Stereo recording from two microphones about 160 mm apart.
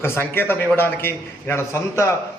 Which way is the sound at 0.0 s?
15° left (ahead or behind).